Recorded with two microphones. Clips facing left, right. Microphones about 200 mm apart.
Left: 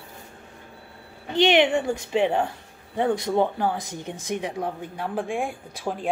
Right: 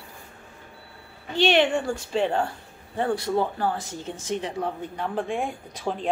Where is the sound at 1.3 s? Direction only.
15° left (ahead or behind).